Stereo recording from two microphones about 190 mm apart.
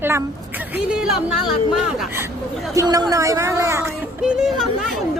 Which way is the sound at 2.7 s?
15° right (ahead or behind).